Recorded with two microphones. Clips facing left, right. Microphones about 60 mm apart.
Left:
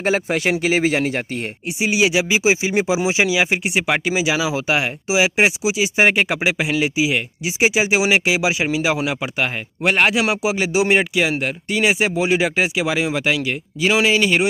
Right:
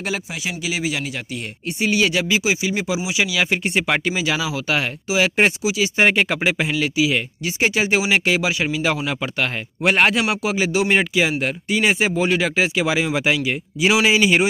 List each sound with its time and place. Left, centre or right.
0.3 s speech: left
1.7 s speech: centre
10.7 s speech: centre
11.0 s speech: centre